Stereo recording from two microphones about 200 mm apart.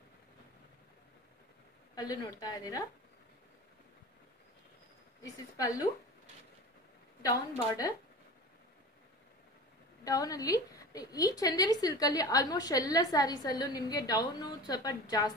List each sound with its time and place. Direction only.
2.0 s a woman's voice: 20° left (ahead or behind)
5.6 s speech: 15° left (ahead or behind)
7.2 s speech: 20° left (ahead or behind)
10.0 s a woman's voice: 20° left (ahead or behind)